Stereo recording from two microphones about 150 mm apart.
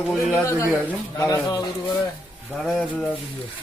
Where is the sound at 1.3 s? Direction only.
25° left (ahead or behind).